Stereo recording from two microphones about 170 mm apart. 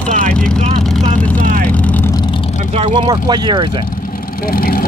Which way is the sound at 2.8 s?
30° right (ahead or behind).